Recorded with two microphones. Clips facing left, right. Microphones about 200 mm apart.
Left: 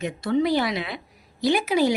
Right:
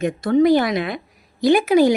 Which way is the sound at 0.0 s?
50° right (ahead or behind).